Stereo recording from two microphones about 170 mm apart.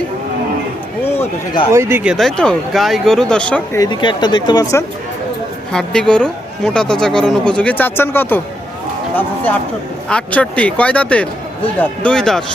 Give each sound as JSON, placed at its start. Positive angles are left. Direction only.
{"t": 1.0, "sound": "a sound", "side_deg": 15}
{"t": 1.7, "sound": "speech", "side_deg": -15}
{"t": 2.0, "sound": "speech", "side_deg": 0}
{"t": 3.8, "sound": "speech", "side_deg": 25}
{"t": 5.7, "sound": "speech", "side_deg": 5}